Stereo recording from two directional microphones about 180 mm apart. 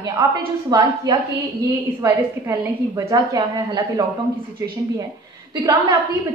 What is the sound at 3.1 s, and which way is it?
Speech, 20° right (ahead or behind).